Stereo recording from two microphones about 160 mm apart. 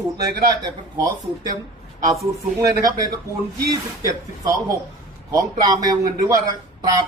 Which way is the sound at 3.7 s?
20° right (ahead or behind).